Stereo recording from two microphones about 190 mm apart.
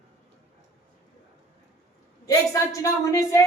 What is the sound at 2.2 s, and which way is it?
A woman's voice, 20° left (ahead or behind).